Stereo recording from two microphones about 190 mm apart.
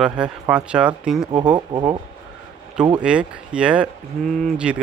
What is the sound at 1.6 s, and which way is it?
Speech, 20° right (ahead or behind).